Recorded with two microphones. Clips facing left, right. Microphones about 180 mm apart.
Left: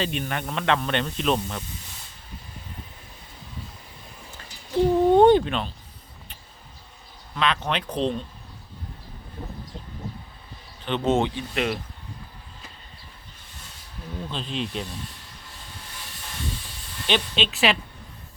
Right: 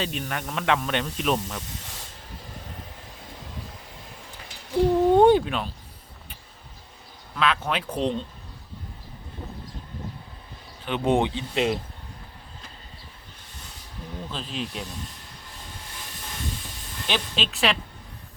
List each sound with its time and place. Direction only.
0.0 s speech: centre (ahead or behind)
4.7 s a sound: 10° right (ahead or behind)
7.3 s speech: 5° right (ahead or behind)
10.8 s speech: 10° right (ahead or behind)
14.3 s speech: 5° right (ahead or behind)
17.1 s speech: centre (ahead or behind)